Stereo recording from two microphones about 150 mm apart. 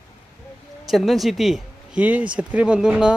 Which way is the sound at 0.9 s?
Centre (ahead or behind).